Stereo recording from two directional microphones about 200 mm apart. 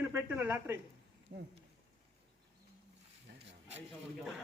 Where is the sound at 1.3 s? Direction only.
50° right (ahead or behind).